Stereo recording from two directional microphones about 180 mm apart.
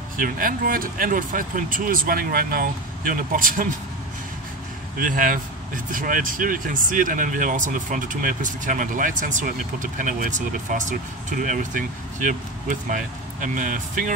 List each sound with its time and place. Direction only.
0.2 s speech: 50° right (ahead or behind)
4.9 s speech: 50° right (ahead or behind)